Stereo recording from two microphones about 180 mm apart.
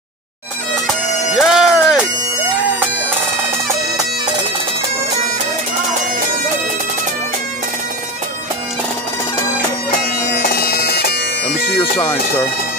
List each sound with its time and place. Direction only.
0.8 s bagpipes: centre (ahead or behind)
10.3 s bagpipes: 55° left (ahead or behind)
11.7 s bagpipes: 25° left (ahead or behind)